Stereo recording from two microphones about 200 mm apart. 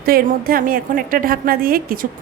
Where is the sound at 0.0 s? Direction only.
45° right (ahead or behind).